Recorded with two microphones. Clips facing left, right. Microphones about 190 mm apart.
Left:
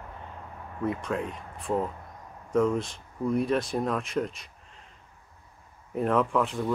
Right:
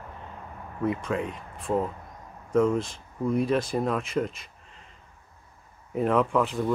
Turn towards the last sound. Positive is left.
turn(degrees=0)  # may be behind; listen again after turning